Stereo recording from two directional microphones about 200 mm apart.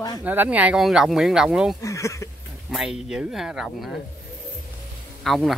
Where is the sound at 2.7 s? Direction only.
Centre (ahead or behind).